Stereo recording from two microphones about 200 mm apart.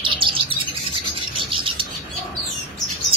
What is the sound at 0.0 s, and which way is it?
Bird, 25° right (ahead or behind).